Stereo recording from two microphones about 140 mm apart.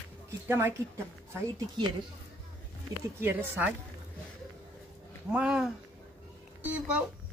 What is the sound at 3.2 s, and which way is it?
Speech, 10° right (ahead or behind).